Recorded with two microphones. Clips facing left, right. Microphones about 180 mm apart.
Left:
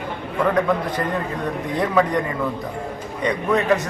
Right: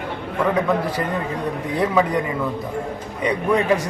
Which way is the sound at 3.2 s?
10° right (ahead or behind).